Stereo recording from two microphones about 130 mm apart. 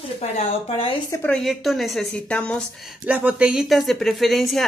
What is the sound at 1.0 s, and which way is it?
Speech, 20° left (ahead or behind).